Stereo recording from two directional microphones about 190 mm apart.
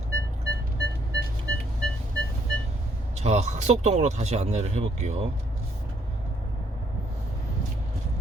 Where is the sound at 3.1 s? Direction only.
35° right (ahead or behind).